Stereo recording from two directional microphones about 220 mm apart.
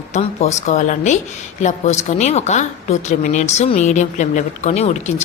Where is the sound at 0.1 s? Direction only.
30° left (ahead or behind).